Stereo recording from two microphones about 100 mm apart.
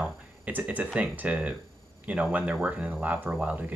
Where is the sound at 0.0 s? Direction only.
15° right (ahead or behind).